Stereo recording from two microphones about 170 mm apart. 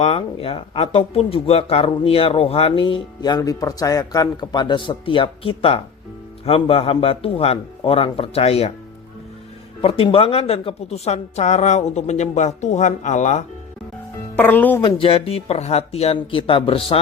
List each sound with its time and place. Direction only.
0.0 s speech: 35° left (ahead or behind)
9.8 s speech: 35° left (ahead or behind)
14.3 s speech: 10° left (ahead or behind)
14.8 s speech: 30° left (ahead or behind)